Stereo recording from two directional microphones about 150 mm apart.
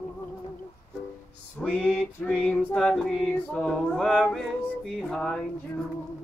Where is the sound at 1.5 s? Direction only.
10° left (ahead or behind).